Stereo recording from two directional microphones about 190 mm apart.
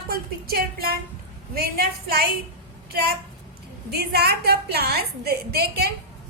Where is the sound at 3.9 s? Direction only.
60° right (ahead or behind).